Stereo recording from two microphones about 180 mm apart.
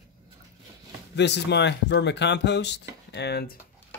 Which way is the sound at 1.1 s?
70° left (ahead or behind).